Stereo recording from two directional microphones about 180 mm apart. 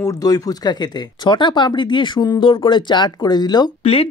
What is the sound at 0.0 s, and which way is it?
Speech, 20° left (ahead or behind).